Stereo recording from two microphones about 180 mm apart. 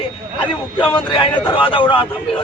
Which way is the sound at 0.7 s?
25° left (ahead or behind).